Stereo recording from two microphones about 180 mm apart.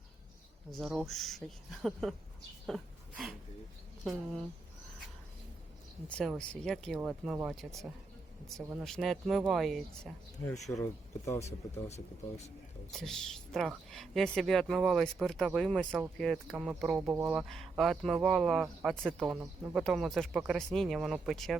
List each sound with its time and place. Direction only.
0.8 s speech: centre (ahead or behind)
2.6 s a sound: centre (ahead or behind)
6.1 s speech: 5° left (ahead or behind)
11.3 s speech: 15° left (ahead or behind)
11.7 s speech: 35° left (ahead or behind)
12.9 s speech: centre (ahead or behind)
17.5 s speech: centre (ahead or behind)